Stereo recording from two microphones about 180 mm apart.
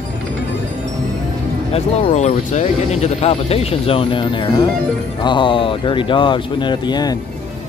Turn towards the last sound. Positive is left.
turn(degrees=20)  # may be behind; listen again after turning